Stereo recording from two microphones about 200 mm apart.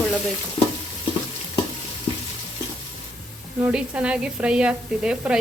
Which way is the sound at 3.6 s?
5° right (ahead or behind).